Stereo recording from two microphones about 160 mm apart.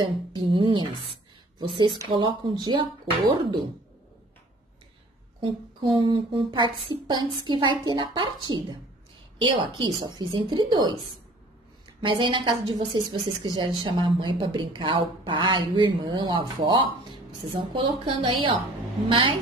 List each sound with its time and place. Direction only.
0.0 s a woman's voice: 30° right (ahead or behind)
2.0 s a woman's voice: 30° right (ahead or behind)
5.4 s a woman's voice: 30° right (ahead or behind)
12.0 s a woman's voice: 30° right (ahead or behind)